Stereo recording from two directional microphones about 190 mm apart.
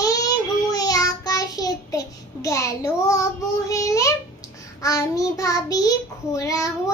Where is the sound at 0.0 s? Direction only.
20° left (ahead or behind).